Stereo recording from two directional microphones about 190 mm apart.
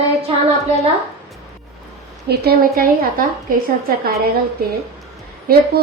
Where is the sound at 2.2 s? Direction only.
55° right (ahead or behind).